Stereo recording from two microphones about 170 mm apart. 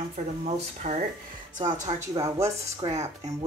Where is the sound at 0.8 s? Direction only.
45° right (ahead or behind).